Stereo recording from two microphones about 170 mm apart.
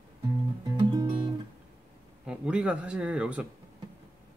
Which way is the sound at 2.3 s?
5° right (ahead or behind).